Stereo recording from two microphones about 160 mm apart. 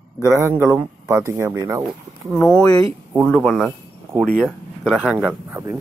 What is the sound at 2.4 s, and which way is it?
Speech, 15° left (ahead or behind).